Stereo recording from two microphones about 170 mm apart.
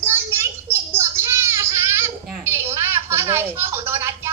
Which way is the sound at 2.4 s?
15° right (ahead or behind).